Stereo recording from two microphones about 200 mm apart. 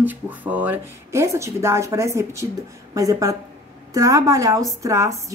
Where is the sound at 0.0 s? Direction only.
10° right (ahead or behind).